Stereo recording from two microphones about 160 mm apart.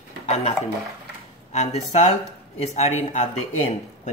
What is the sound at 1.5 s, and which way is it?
Speech, 45° left (ahead or behind).